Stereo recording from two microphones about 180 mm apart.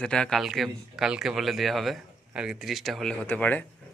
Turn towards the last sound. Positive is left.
turn(degrees=10)  # may be behind; listen again after turning